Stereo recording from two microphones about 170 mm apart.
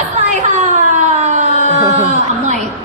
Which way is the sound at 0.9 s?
45° right (ahead or behind).